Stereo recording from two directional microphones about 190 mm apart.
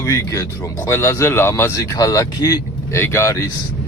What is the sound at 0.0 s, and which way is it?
Speech, 15° left (ahead or behind).